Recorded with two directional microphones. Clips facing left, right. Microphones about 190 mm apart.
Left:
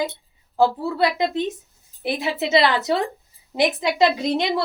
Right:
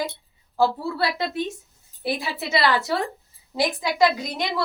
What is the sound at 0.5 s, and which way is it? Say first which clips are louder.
A woman's voice: left 3 dB; 20° left (ahead or behind).